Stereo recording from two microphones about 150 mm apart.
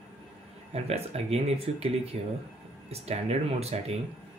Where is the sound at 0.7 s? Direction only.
45° right (ahead or behind).